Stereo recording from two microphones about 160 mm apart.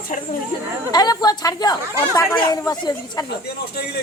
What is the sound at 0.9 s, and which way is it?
Speech, 25° left (ahead or behind).